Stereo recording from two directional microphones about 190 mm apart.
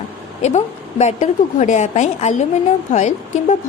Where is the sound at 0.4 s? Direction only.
35° left (ahead or behind).